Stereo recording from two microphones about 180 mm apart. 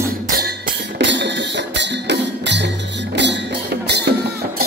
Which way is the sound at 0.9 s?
75° right (ahead or behind).